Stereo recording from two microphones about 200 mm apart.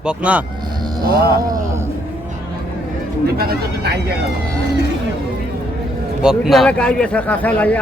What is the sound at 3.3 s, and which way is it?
Speech, 50° right (ahead or behind).